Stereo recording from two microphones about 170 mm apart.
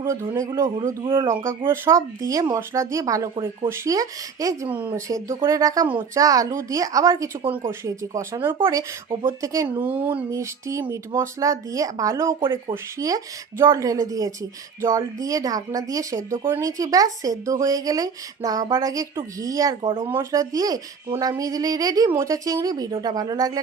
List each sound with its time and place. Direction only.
0.0 s a woman's voice: 15° right (ahead or behind)
20.1 s a woman's voice: 15° right (ahead or behind)